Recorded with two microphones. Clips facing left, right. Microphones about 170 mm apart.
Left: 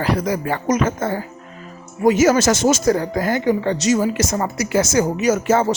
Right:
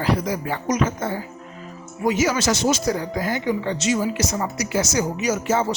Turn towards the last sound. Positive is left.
turn(degrees=55)  # may be behind; listen again after turning